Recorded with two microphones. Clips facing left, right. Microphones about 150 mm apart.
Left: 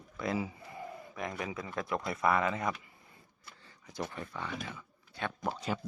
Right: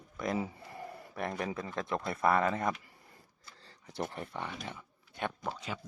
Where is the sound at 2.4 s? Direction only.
50° right (ahead or behind).